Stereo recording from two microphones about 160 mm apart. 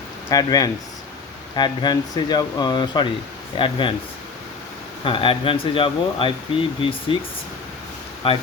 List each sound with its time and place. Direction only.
0.3 s speech: 25° left (ahead or behind)
5.0 s speech: 30° left (ahead or behind)
8.2 s speech: 35° left (ahead or behind)